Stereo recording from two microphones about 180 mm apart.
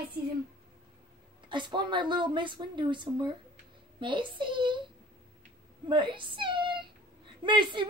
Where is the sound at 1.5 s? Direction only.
25° right (ahead or behind).